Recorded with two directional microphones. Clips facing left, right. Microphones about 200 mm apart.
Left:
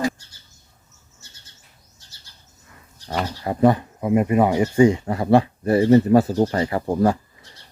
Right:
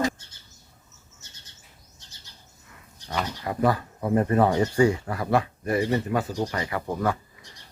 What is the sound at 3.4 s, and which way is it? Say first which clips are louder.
Speech: left 7 dB; 30° left (ahead or behind).